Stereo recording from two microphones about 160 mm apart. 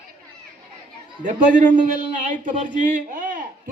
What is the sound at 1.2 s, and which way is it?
A man's voice, 55° right (ahead or behind).